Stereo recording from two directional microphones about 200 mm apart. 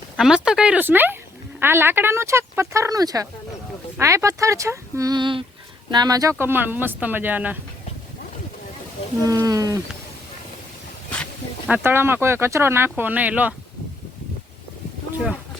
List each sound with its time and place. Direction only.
0.2 s a woman's voice: 5° right (ahead or behind)
9.2 s speech: 15° right (ahead or behind)
11.7 s speech: 10° right (ahead or behind)